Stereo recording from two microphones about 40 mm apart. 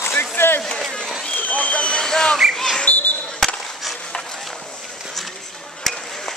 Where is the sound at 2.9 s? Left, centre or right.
Left.